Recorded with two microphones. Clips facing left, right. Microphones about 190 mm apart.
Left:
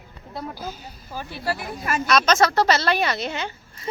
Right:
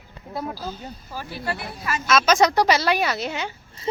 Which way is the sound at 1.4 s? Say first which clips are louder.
Left 3 dB; 45° left (ahead or behind).